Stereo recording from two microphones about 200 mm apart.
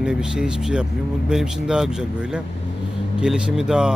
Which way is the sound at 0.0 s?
5° right (ahead or behind).